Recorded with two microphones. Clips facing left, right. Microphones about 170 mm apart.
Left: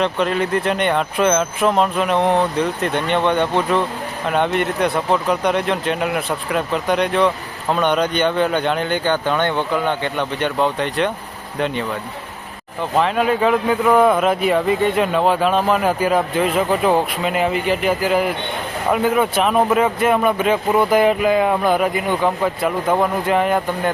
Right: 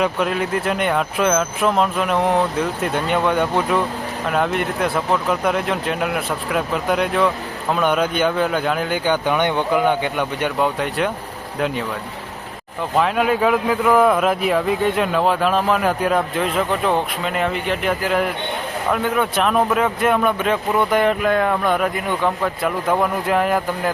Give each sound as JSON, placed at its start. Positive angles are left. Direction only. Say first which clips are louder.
{"t": 0.0, "sound": "speech", "louder": "left 1 dB", "side_deg": -5}
{"t": 13.0, "sound": "speech", "louder": "left 1 dB", "side_deg": 0}